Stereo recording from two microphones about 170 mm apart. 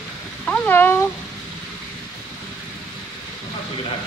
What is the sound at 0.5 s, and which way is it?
Speech, 10° left (ahead or behind).